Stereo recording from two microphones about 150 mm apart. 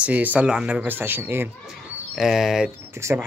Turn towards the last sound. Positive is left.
turn(degrees=-15)  # may be behind; listen again after turning